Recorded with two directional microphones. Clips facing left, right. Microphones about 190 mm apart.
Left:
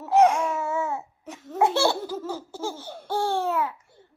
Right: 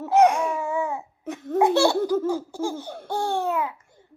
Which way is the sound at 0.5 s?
15° right (ahead or behind).